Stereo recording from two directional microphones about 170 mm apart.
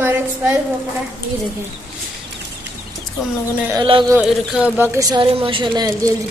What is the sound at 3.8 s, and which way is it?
Speech, 30° right (ahead or behind).